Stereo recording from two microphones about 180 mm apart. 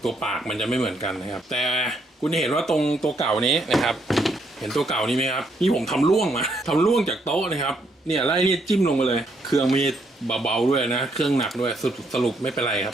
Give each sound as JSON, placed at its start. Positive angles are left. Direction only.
{"t": 0.0, "sound": "speech", "side_deg": 0}